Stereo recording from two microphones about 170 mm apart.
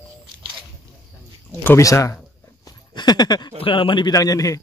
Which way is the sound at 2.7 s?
25° left (ahead or behind).